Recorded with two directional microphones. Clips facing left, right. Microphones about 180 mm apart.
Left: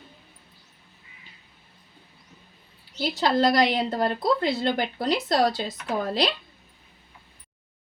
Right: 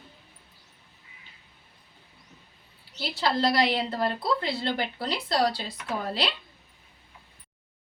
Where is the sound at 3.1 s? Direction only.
45° left (ahead or behind).